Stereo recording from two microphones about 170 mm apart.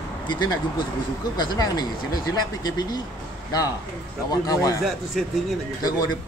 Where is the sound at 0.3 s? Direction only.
25° left (ahead or behind).